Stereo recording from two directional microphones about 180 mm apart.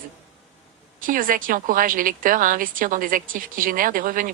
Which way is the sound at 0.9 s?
50° right (ahead or behind).